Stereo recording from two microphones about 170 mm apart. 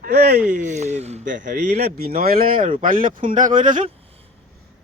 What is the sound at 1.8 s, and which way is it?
Speech, 70° right (ahead or behind).